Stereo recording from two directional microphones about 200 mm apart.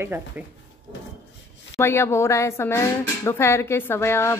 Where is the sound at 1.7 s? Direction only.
15° left (ahead or behind).